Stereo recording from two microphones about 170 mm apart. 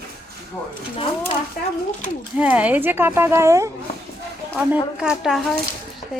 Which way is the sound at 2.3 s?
10° right (ahead or behind).